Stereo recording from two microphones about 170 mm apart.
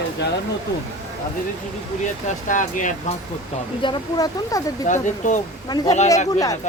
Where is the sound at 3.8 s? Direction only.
25° left (ahead or behind).